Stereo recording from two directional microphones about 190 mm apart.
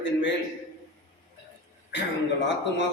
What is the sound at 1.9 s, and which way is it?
Speech, 70° left (ahead or behind).